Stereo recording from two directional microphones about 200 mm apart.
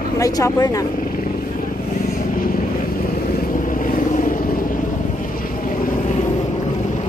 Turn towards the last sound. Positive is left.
turn(degrees=40)  # may be behind; listen again after turning